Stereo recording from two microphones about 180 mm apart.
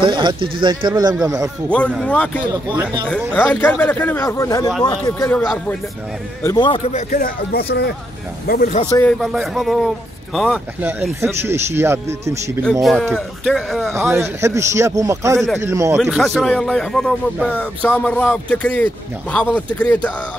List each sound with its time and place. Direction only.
0.0 s speech: 25° right (ahead or behind)
1.7 s speech: 5° left (ahead or behind)
2.7 s speech: 10° right (ahead or behind)
3.3 s speech: 10° left (ahead or behind)
5.3 s speech: 10° left (ahead or behind)
6.4 s speech: 25° left (ahead or behind)
6.9 s speech: 45° left (ahead or behind)
9.2 s speech: centre (ahead or behind)
12.8 s speech: centre (ahead or behind)
13.9 s speech: 15° right (ahead or behind)
15.3 s speech: centre (ahead or behind)
15.6 s speech: 15° right (ahead or behind)
16.0 s speech: centre (ahead or behind)